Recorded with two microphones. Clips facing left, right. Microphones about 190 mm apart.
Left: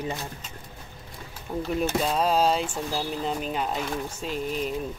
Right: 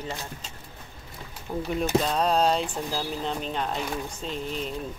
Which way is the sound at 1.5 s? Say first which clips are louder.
Right 1 dB; centre (ahead or behind).